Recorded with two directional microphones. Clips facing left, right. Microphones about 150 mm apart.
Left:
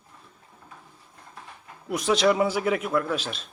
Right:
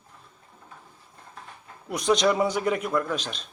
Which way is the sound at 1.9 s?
5° left (ahead or behind).